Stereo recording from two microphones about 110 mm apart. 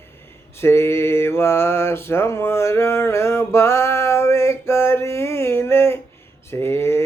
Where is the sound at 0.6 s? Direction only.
25° left (ahead or behind).